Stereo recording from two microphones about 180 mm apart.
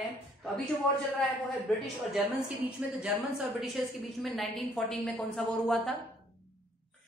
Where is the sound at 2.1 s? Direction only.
5° right (ahead or behind).